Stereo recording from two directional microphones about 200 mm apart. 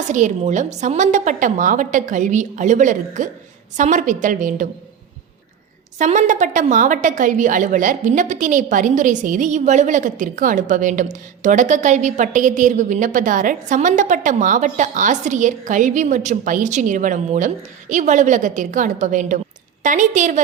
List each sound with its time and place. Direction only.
0.1 s a woman's voice: 40° right (ahead or behind)
6.0 s a woman's voice: 35° right (ahead or behind)